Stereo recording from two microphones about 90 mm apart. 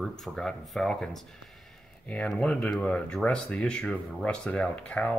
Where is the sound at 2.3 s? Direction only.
15° left (ahead or behind).